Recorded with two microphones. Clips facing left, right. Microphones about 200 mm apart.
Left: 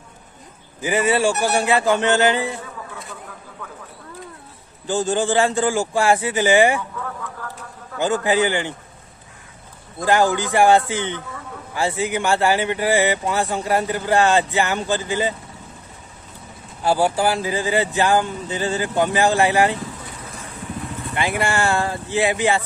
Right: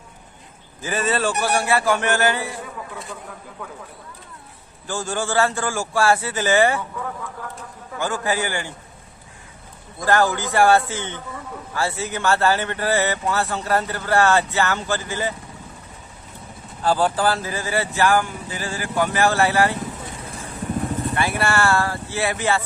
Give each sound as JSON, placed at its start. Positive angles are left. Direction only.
{"t": 0.7, "sound": "speech", "side_deg": 15}
{"t": 4.8, "sound": "speech", "side_deg": 20}
{"t": 8.0, "sound": "speech", "side_deg": 20}
{"t": 10.0, "sound": "speech", "side_deg": 15}
{"t": 16.8, "sound": "speech", "side_deg": 10}
{"t": 20.7, "sound": "vehicle", "side_deg": -45}
{"t": 21.1, "sound": "speech", "side_deg": 15}